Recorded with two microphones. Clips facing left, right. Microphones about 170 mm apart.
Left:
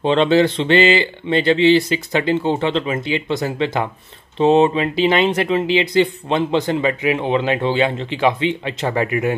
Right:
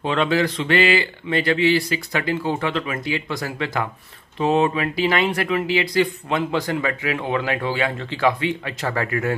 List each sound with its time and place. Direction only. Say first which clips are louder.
0.0 s speech: left 6 dB; 25° left (ahead or behind)